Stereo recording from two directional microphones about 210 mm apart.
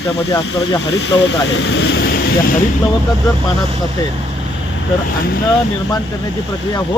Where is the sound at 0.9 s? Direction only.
55° left (ahead or behind).